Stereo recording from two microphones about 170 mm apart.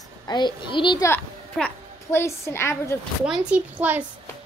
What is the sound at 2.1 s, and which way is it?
Speech, 15° left (ahead or behind).